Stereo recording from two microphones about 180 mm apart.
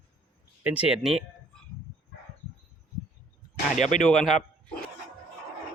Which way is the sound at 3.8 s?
45° left (ahead or behind).